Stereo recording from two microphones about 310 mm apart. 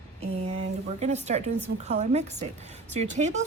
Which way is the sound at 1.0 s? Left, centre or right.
Right.